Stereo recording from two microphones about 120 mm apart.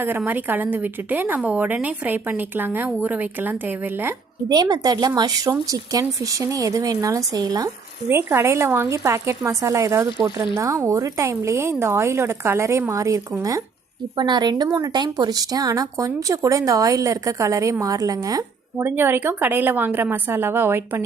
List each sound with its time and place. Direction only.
0.3 s a woman's voice: 15° right (ahead or behind)
4.4 s speech: 35° right (ahead or behind)
8.1 s a woman's voice: 20° right (ahead or behind)
14.2 s a woman's voice: 40° right (ahead or behind)
18.8 s a woman's voice: 20° right (ahead or behind)